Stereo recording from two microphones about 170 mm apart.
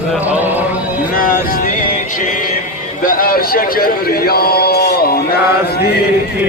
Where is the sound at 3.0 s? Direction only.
55° left (ahead or behind).